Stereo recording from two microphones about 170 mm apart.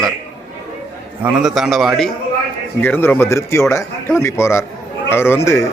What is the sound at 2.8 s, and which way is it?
A man's voice, 10° left (ahead or behind).